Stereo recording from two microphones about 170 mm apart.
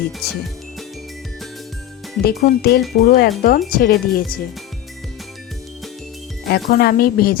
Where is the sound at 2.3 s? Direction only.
70° left (ahead or behind).